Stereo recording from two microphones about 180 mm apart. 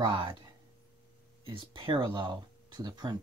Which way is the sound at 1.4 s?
30° right (ahead or behind).